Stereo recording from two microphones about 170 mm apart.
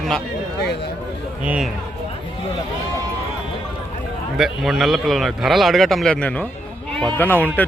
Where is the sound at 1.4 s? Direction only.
5° right (ahead or behind).